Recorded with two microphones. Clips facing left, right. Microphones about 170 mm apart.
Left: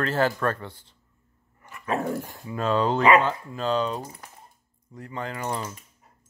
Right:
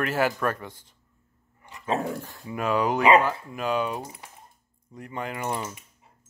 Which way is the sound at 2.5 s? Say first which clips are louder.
Left 1 dB; 10° right (ahead or behind).